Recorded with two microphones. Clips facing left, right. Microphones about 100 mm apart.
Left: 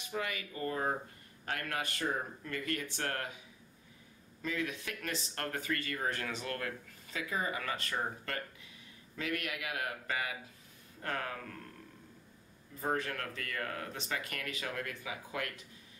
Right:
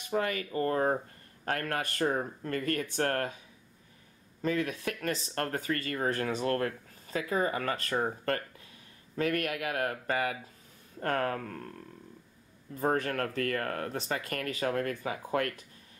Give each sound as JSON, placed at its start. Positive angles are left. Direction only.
{"t": 0.1, "sound": "speech", "side_deg": -45}
{"t": 4.4, "sound": "speech", "side_deg": -45}
{"t": 12.8, "sound": "speech", "side_deg": -45}